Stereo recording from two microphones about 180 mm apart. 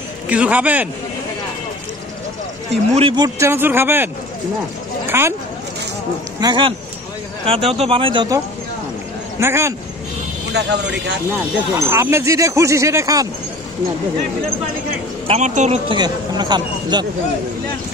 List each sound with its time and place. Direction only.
0.3 s speech: 5° right (ahead or behind)
3.0 s speech: 30° right (ahead or behind)
3.3 s speech: 15° right (ahead or behind)
5.1 s speech: 15° right (ahead or behind)
6.4 s speech: 25° right (ahead or behind)
9.4 s speech: 15° right (ahead or behind)
10.5 s a man's voice: 75° right (ahead or behind)
11.7 s speech: 15° right (ahead or behind)
15.2 s speech: 40° right (ahead or behind)
15.9 s speech: 25° right (ahead or behind)